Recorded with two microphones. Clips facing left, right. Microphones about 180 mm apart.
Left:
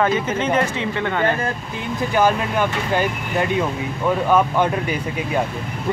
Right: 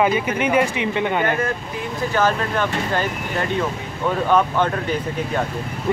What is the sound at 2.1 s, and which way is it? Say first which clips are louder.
Speech: left 2 dB; 10° left (ahead or behind).